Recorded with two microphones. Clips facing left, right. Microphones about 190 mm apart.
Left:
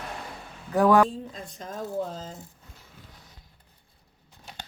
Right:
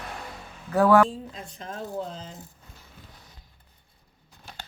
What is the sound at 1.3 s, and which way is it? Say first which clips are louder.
Speech: left 1 dB; 45° left (ahead or behind).